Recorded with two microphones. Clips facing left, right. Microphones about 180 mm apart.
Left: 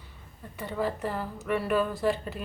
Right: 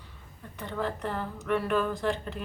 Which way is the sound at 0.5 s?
5° left (ahead or behind).